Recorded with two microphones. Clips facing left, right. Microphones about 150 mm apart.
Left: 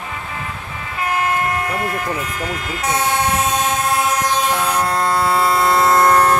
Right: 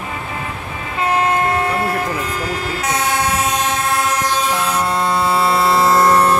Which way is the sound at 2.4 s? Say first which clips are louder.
Right 2 dB; 35° right (ahead or behind).